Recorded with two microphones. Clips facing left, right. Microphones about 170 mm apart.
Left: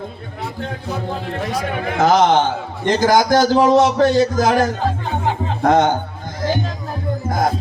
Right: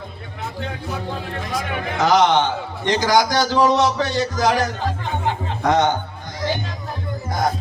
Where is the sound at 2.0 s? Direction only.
45° left (ahead or behind).